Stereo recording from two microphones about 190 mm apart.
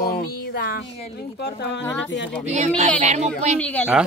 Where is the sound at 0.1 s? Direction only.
50° left (ahead or behind).